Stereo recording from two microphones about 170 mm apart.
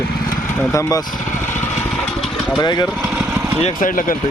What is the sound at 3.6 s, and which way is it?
Speech, 50° left (ahead or behind).